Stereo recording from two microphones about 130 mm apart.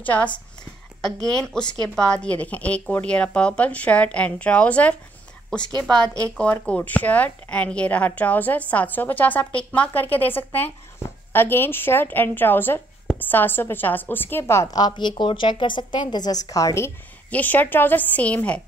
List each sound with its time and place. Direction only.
0.0 s a woman's voice: 10° left (ahead or behind)